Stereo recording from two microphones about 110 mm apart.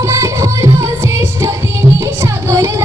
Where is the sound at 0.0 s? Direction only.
25° right (ahead or behind).